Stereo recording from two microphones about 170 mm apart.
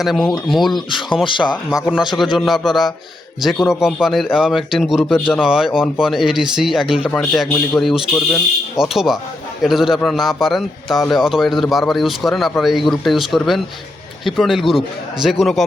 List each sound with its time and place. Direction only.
0.0 s a man's voice: centre (ahead or behind)
0.9 s speech: 30° left (ahead or behind)
1.7 s a man's voice: 5° right (ahead or behind)